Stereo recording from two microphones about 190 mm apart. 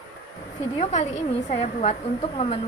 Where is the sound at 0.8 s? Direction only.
35° left (ahead or behind).